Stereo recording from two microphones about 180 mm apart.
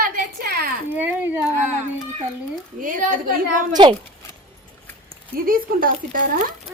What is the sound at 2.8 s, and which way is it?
Speech, 50° right (ahead or behind).